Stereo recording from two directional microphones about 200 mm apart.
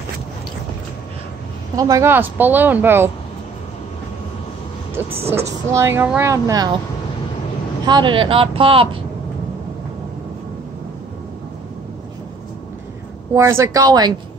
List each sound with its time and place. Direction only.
1.8 s speech: 15° right (ahead or behind)
5.2 s speech: 30° right (ahead or behind)
5.7 s speech: 15° right (ahead or behind)
7.8 s speech: 20° right (ahead or behind)
13.3 s speech: 15° right (ahead or behind)